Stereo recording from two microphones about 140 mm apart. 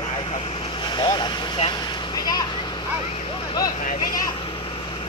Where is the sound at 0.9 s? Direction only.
35° left (ahead or behind).